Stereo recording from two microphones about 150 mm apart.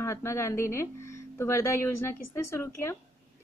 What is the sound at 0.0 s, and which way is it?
Speech, 20° left (ahead or behind).